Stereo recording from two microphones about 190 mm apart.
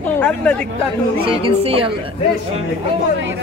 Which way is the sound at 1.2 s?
30° right (ahead or behind).